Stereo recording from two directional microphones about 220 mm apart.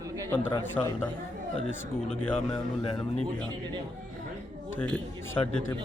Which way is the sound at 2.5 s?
25° left (ahead or behind).